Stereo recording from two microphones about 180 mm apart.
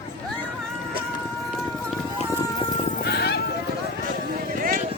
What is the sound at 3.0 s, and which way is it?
Clip-clop, 65° left (ahead or behind).